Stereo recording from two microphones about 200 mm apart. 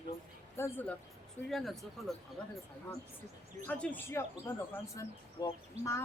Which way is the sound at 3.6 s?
5° left (ahead or behind).